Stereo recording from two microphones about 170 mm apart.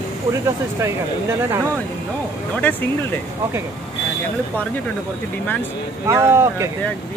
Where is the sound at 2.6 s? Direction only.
10° left (ahead or behind).